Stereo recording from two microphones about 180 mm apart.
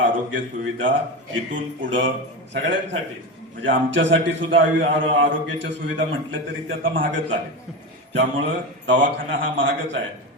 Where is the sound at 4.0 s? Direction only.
90° right.